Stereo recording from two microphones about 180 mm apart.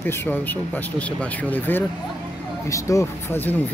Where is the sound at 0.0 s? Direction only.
10° left (ahead or behind).